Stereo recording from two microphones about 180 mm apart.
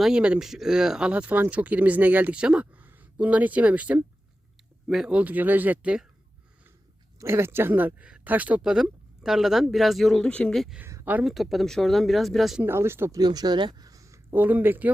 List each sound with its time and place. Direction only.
0.0 s speech: 5° right (ahead or behind)
7.2 s speech: 15° right (ahead or behind)
10.8 s speech: 10° right (ahead or behind)
12.6 s speech: 15° right (ahead or behind)